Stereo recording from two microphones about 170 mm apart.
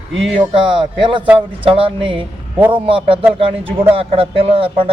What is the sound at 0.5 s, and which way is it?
Speech, 30° right (ahead or behind).